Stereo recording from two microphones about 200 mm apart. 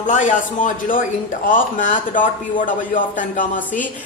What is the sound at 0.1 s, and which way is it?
Speech, 40° left (ahead or behind).